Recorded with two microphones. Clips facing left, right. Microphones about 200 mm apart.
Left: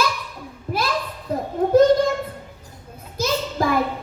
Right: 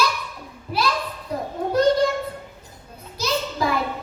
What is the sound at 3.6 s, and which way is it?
Music, 50° left (ahead or behind).